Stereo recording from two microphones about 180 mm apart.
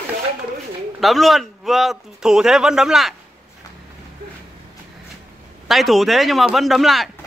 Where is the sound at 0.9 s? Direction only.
Centre (ahead or behind).